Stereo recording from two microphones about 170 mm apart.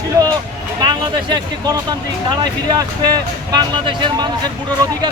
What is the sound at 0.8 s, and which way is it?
Speech, 25° right (ahead or behind).